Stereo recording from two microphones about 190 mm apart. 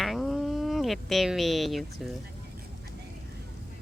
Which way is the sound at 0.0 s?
Centre (ahead or behind).